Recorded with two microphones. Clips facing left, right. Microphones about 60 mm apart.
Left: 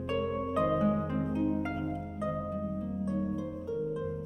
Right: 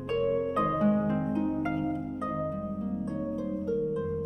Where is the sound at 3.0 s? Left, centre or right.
Centre.